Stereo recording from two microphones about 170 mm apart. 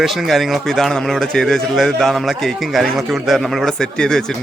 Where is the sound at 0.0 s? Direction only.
Centre (ahead or behind).